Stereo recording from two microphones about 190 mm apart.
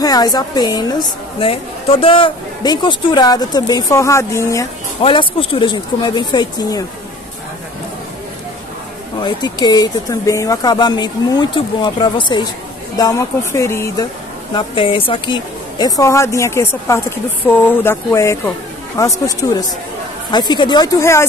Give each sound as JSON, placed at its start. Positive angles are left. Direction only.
{"t": 0.0, "sound": "a woman's voice", "side_deg": 20}
{"t": 5.0, "sound": "a woman's voice", "side_deg": 30}
{"t": 9.2, "sound": "a woman's voice", "side_deg": 20}
{"t": 14.5, "sound": "a woman's voice", "side_deg": 30}